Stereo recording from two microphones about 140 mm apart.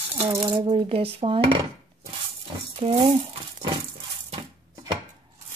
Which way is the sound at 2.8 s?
45° right (ahead or behind).